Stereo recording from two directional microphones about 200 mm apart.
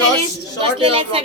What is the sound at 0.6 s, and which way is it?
Speech, 25° right (ahead or behind).